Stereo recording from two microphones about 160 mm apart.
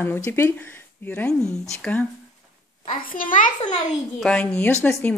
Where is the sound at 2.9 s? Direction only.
60° left (ahead or behind).